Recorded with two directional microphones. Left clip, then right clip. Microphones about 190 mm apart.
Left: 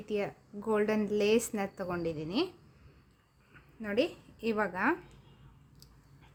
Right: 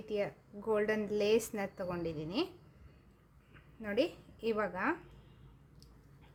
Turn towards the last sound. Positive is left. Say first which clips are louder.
# left 3 dB
turn(degrees=25)  # may be behind; listen again after turning